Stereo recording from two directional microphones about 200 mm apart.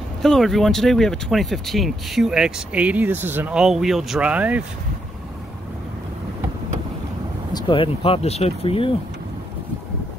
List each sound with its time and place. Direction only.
0.2 s speech: centre (ahead or behind)
7.5 s speech: 25° left (ahead or behind)